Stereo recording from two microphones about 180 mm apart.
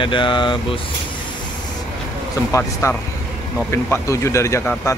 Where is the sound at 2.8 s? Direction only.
15° left (ahead or behind).